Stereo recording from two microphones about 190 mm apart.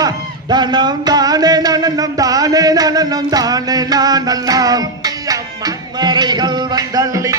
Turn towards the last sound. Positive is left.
turn(degrees=-15)  # may be behind; listen again after turning